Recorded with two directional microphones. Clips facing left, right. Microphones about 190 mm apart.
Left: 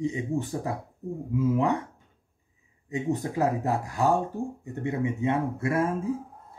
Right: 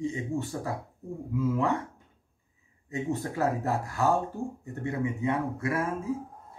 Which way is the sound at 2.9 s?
15° left (ahead or behind).